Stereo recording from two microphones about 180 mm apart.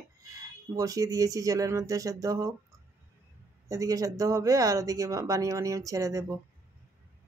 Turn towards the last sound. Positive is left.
turn(degrees=-15)  # may be behind; listen again after turning